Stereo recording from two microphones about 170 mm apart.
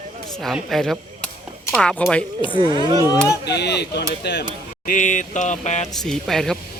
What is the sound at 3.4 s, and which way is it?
Speech, 80° left.